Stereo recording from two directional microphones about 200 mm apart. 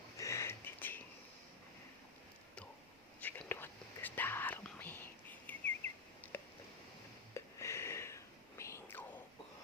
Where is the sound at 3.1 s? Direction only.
10° left (ahead or behind).